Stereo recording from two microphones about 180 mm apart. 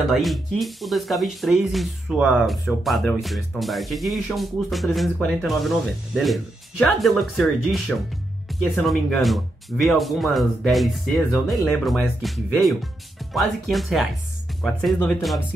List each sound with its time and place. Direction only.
0.1 s speech: centre (ahead or behind)
8.5 s music: centre (ahead or behind)
8.8 s speech: centre (ahead or behind)